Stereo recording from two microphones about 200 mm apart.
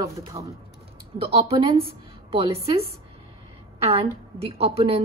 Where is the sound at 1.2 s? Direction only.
30° right (ahead or behind).